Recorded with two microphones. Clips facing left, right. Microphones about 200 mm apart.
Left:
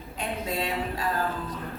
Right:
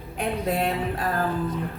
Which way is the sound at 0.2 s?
55° right (ahead or behind).